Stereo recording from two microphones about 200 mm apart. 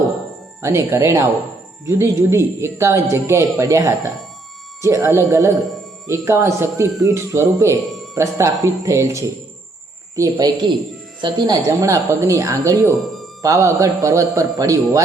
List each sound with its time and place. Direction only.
0.6 s a woman's voice: 15° right (ahead or behind)
13.0 s music: centre (ahead or behind)
13.4 s speech: 15° right (ahead or behind)